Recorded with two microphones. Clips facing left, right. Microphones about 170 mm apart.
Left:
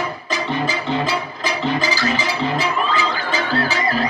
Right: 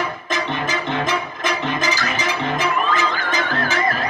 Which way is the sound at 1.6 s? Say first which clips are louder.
Left 2 dB; 15° right (ahead or behind).